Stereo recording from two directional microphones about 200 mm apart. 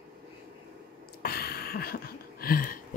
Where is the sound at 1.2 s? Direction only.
50° left (ahead or behind).